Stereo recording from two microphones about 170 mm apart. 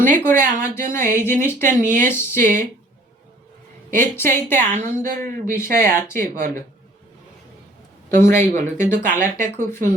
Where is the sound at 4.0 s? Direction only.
15° left (ahead or behind).